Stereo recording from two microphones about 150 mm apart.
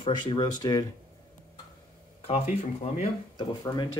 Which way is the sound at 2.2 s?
40° left (ahead or behind).